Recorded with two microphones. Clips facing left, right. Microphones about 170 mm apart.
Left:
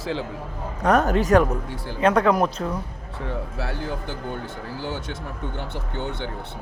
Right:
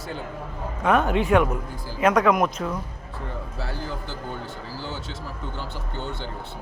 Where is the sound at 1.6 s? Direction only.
70° left (ahead or behind).